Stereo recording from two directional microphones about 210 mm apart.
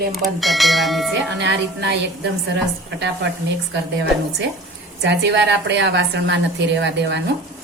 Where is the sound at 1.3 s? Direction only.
55° right (ahead or behind).